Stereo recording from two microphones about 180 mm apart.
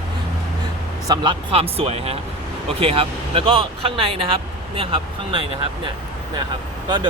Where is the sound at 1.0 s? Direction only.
25° right (ahead or behind).